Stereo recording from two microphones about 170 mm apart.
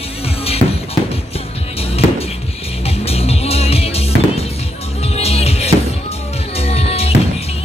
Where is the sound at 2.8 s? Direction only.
35° left (ahead or behind).